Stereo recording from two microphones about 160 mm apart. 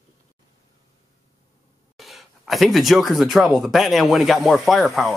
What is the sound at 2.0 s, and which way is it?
Speech, centre (ahead or behind).